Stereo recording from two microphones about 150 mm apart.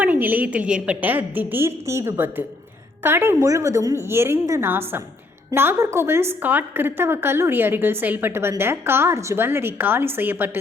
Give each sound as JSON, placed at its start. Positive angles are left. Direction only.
{"t": 0.0, "sound": "a woman's voice", "side_deg": -10}